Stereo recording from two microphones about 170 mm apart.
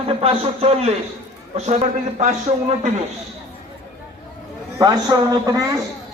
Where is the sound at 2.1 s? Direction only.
40° right (ahead or behind).